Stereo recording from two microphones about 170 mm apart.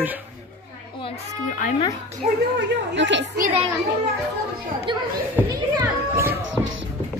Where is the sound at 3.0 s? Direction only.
90° right.